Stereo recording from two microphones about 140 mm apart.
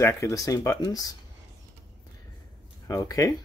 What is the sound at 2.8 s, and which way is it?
Speech, 25° left (ahead or behind).